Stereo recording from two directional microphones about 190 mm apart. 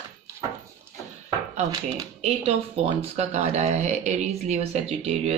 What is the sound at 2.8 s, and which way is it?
Speech, 35° right (ahead or behind).